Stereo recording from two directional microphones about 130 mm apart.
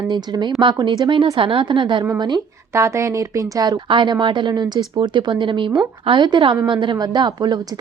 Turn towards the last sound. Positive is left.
turn(degrees=-30)  # may be behind; listen again after turning